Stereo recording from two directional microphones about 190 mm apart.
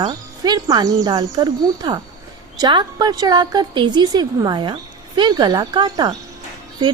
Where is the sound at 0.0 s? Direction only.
20° right (ahead or behind).